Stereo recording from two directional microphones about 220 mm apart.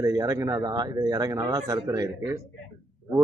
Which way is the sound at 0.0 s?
15° right (ahead or behind).